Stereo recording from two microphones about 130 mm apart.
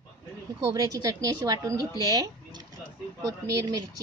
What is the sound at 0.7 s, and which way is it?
Speech, 30° right (ahead or behind).